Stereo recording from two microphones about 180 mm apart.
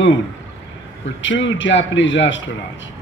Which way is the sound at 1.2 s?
90° left.